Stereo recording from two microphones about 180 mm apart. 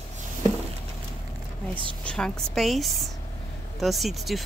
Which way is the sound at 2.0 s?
5° left (ahead or behind).